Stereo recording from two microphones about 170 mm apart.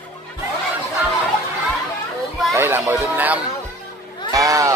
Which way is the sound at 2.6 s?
15° right (ahead or behind).